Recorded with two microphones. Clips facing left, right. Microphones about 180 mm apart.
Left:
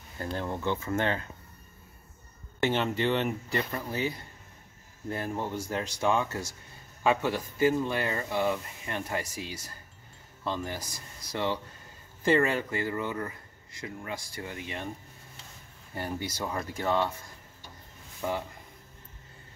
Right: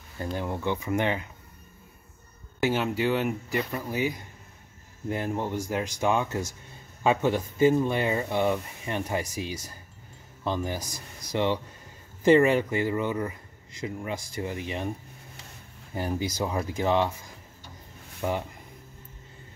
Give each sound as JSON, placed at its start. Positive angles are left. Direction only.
{"t": 0.2, "sound": "speech", "side_deg": -15}
{"t": 2.6, "sound": "speech", "side_deg": -5}
{"t": 15.9, "sound": "speech", "side_deg": -15}
{"t": 18.2, "sound": "speech", "side_deg": -10}